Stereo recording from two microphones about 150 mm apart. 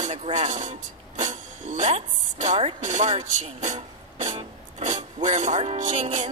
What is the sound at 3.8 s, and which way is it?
Music, 45° right (ahead or behind).